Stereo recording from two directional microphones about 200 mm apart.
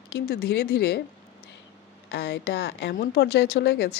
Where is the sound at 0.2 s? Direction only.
50° left (ahead or behind).